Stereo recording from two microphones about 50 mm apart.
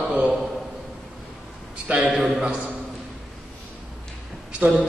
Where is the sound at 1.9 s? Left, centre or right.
Right.